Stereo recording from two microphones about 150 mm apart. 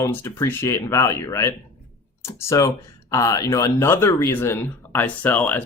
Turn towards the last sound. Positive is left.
turn(degrees=10)  # may be behind; listen again after turning